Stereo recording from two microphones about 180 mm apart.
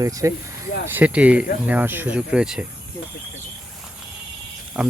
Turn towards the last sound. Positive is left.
turn(degrees=-5)  # may be behind; listen again after turning